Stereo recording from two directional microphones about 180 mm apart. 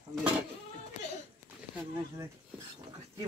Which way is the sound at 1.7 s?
15° right (ahead or behind).